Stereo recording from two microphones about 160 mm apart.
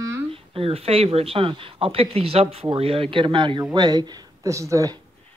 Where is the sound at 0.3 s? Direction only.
35° right (ahead or behind).